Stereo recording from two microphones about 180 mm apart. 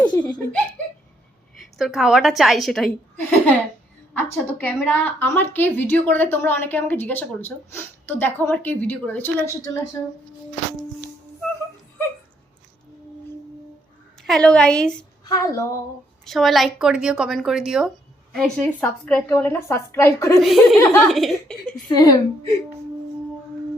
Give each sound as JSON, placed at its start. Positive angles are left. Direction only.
{"t": 0.0, "sound": "giggle", "side_deg": 5}
{"t": 1.5, "sound": "a woman's voice", "side_deg": 0}
{"t": 14.2, "sound": "a woman's voice", "side_deg": 5}
{"t": 15.2, "sound": "speech", "side_deg": 20}
{"t": 16.2, "sound": "a woman's voice", "side_deg": 0}
{"t": 20.4, "sound": "a woman's voice", "side_deg": 0}
{"t": 21.8, "sound": "a woman's voice", "side_deg": 20}